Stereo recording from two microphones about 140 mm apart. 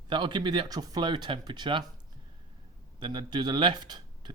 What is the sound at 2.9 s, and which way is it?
Speech, 35° right (ahead or behind).